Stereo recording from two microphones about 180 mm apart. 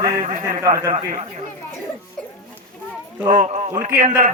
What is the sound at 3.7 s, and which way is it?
Speech, 15° right (ahead or behind).